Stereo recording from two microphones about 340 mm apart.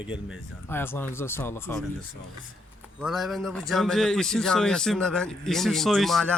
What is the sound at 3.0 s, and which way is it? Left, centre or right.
A man's voice, centre.